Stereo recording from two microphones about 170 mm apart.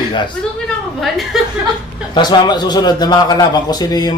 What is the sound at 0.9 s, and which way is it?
Speech, centre (ahead or behind).